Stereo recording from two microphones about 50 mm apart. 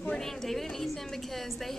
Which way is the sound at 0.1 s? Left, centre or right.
Centre.